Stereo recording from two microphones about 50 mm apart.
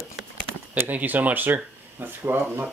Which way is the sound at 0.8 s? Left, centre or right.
Right.